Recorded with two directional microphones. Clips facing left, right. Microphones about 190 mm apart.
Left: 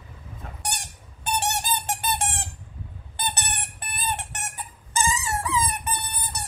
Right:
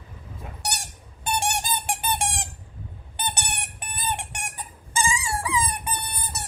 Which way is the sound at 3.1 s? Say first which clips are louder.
Even; 15° right (ahead or behind).